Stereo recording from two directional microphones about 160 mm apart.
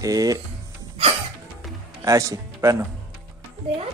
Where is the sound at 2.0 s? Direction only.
20° right (ahead or behind).